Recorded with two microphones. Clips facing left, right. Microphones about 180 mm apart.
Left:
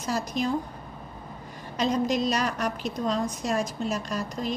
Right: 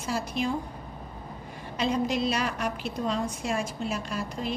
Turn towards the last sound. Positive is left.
turn(degrees=40)  # may be behind; listen again after turning